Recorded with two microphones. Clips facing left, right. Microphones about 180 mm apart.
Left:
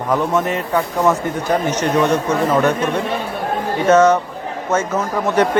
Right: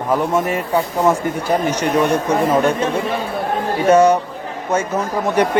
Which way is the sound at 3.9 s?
10° right (ahead or behind).